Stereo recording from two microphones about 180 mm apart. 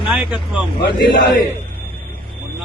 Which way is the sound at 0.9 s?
50° left (ahead or behind).